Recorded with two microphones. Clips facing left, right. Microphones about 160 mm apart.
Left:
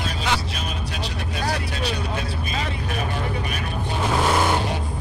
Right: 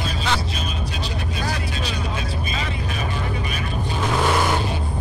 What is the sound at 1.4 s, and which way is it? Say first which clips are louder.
Vehicle: left 4 dB; 65° left (ahead or behind).